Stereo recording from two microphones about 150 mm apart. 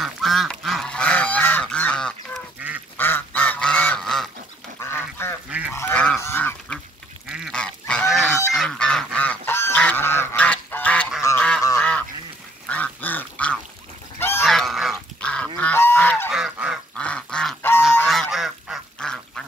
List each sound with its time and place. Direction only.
0.0 s goose: centre (ahead or behind)
3.0 s duck: 15° left (ahead or behind)
4.7 s duck: 15° left (ahead or behind)
5.5 s goose: 10° right (ahead or behind)
5.9 s goose: 5° left (ahead or behind)
6.2 s duck: 10° left (ahead or behind)
7.2 s duck: 5° right (ahead or behind)
7.5 s goose: 5° left (ahead or behind)
12.6 s duck: 10° left (ahead or behind)
14.4 s goose: centre (ahead or behind)
16.3 s goose: 5° right (ahead or behind)
16.9 s duck: 5° left (ahead or behind)
18.0 s goose: centre (ahead or behind)